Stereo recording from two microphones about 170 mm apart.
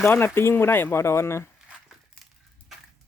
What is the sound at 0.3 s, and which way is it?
Speech, 15° left (ahead or behind).